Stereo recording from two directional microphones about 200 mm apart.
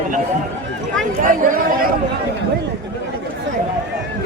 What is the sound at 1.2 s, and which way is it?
Speech, 40° right (ahead or behind).